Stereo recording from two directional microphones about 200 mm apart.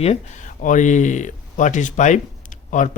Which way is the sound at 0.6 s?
40° left (ahead or behind).